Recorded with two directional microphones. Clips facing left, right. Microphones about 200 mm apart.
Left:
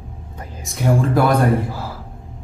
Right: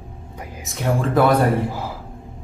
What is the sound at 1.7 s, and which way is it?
Gasp, 15° right (ahead or behind).